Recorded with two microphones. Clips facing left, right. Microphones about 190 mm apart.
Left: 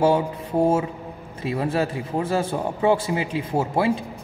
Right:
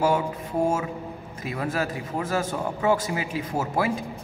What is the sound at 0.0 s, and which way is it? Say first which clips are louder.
Mantra: left 4 dB; 30° left (ahead or behind).